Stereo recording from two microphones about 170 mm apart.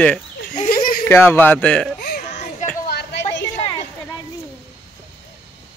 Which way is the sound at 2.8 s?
70° left (ahead or behind).